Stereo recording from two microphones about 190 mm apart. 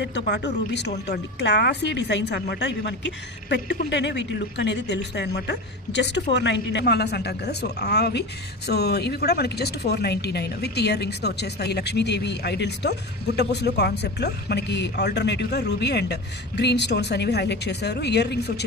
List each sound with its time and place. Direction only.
0.0 s a woman's voice: 65° left (ahead or behind)